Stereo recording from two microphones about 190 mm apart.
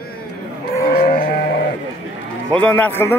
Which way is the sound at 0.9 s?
50° left (ahead or behind).